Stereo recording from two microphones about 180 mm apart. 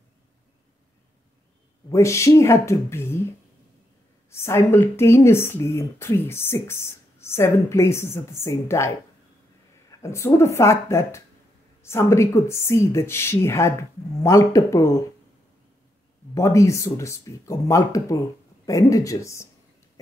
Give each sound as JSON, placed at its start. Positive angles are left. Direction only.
{"t": 1.9, "sound": "speech", "side_deg": 15}
{"t": 4.3, "sound": "speech", "side_deg": 15}
{"t": 16.3, "sound": "speech", "side_deg": 15}